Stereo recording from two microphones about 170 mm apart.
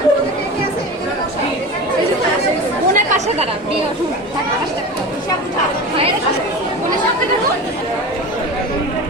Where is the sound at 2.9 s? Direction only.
45° right (ahead or behind).